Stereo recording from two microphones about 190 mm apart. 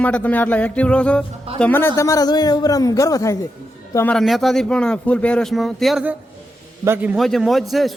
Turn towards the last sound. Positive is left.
turn(degrees=0)  # may be behind; listen again after turning